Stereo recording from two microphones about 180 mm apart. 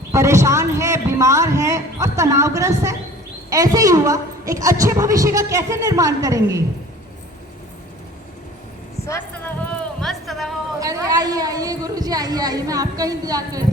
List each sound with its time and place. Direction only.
0.1 s a man's voice: 15° right (ahead or behind)
10.0 s a sound: centre (ahead or behind)
10.8 s a woman's voice: 20° right (ahead or behind)